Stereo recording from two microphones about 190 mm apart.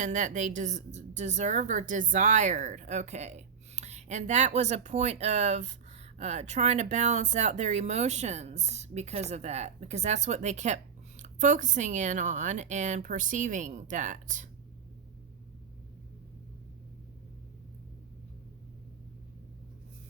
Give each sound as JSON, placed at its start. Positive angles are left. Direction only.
{"t": 0.0, "sound": "a woman's voice", "side_deg": -40}